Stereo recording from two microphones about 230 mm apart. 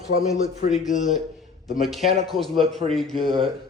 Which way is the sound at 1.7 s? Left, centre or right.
Centre.